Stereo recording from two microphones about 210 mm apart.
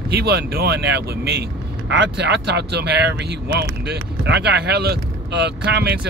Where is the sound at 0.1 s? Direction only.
50° right (ahead or behind).